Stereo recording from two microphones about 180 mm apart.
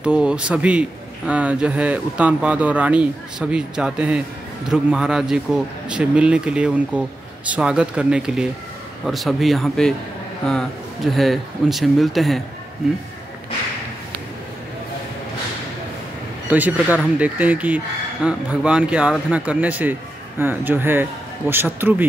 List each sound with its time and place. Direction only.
0.0 s a man's voice: 5° right (ahead or behind)
16.4 s a man's voice: 10° right (ahead or behind)